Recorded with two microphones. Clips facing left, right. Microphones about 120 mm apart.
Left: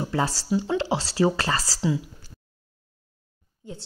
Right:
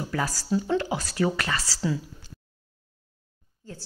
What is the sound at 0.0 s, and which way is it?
Speech, 30° left (ahead or behind).